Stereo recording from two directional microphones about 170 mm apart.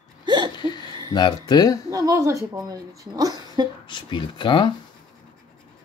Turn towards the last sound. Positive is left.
turn(degrees=30)  # may be behind; listen again after turning